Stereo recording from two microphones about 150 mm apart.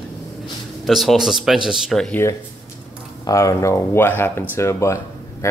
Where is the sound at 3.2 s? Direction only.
20° left (ahead or behind).